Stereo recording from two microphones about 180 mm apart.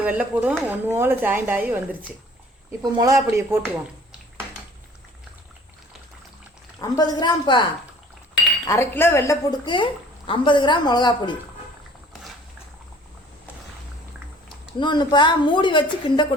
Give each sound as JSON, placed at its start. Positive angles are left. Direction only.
{"t": 0.0, "sound": "speech", "side_deg": -10}
{"t": 2.8, "sound": "speech", "side_deg": -20}
{"t": 6.7, "sound": "speech", "side_deg": 20}
{"t": 8.6, "sound": "speech", "side_deg": 15}
{"t": 14.8, "sound": "speech", "side_deg": 25}